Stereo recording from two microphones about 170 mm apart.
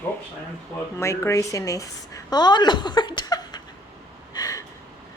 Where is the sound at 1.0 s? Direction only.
15° left (ahead or behind).